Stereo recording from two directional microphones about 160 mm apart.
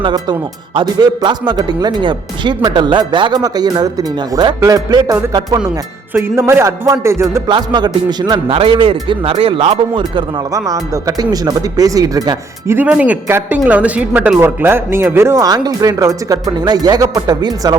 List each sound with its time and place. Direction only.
0.0 s a man's voice: 30° right (ahead or behind)
10.0 s speech: 25° right (ahead or behind)
12.7 s speech: 10° right (ahead or behind); by 17.7 s 25° right (ahead or behind)